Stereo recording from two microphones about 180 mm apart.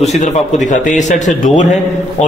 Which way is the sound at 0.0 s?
40° left (ahead or behind).